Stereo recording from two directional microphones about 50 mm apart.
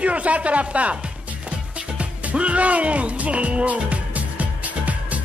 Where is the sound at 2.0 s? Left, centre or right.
Right.